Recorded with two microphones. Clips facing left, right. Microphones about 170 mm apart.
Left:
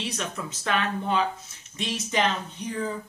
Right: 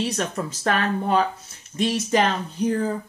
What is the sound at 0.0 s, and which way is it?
Speech, 45° right (ahead or behind).